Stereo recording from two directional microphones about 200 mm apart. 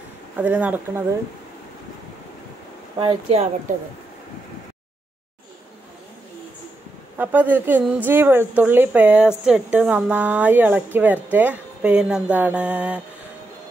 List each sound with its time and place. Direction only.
0.4 s a woman's voice: 5° right (ahead or behind)
3.0 s speech: 30° right (ahead or behind)
7.2 s a woman's voice: 10° right (ahead or behind)